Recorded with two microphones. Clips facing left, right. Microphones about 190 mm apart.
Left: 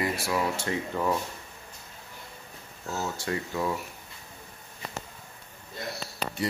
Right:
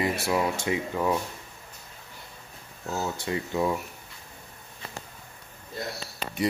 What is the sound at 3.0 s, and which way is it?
Speech, 20° right (ahead or behind).